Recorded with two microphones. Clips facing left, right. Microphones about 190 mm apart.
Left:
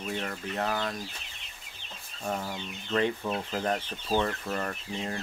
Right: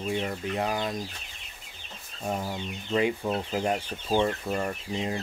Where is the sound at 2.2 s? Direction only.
10° right (ahead or behind).